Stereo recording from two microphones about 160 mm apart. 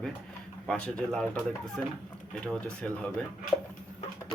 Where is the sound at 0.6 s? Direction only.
5° left (ahead or behind).